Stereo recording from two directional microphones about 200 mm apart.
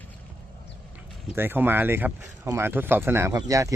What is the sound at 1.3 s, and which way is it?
Speech, 10° right (ahead or behind).